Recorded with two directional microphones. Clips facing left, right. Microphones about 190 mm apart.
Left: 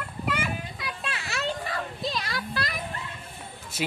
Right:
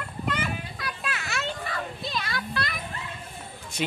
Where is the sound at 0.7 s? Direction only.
25° left (ahead or behind).